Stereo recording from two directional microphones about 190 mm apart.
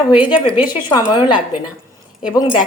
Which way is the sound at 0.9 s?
25° left (ahead or behind).